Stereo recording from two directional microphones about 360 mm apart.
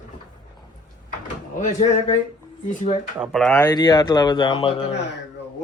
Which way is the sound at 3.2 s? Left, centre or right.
Centre.